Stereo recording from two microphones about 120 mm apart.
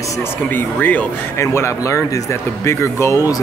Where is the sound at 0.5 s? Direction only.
15° left (ahead or behind).